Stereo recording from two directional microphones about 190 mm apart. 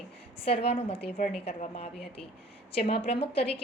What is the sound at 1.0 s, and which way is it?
Speech, 45° left (ahead or behind).